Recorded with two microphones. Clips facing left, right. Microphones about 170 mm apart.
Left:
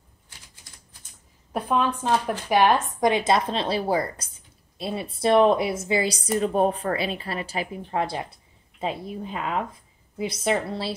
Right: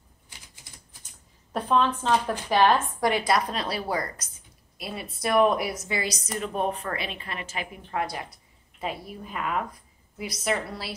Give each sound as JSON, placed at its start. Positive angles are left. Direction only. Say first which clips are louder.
{"t": 1.5, "sound": "a woman's voice", "louder": "even", "side_deg": 10}